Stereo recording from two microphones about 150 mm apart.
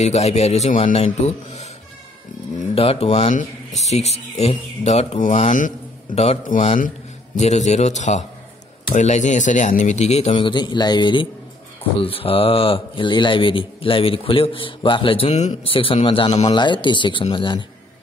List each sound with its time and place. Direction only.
0.0 s speech: 45° left (ahead or behind)
2.7 s speech: 40° left (ahead or behind)
6.1 s speech: 45° left (ahead or behind)
10.4 s speech: 30° left (ahead or behind)